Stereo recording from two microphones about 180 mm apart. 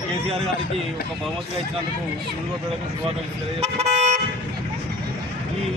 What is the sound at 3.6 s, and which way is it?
Vehicle, 40° right (ahead or behind).